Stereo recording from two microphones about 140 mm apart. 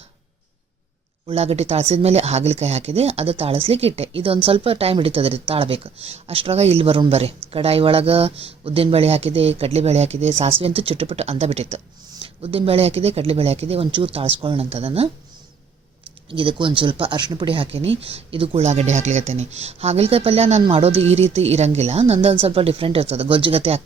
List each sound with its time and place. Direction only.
1.3 s speech: 45° right (ahead or behind)
16.4 s speech: 35° right (ahead or behind)